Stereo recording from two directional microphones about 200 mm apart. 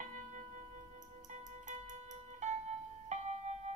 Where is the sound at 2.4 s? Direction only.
35° right (ahead or behind).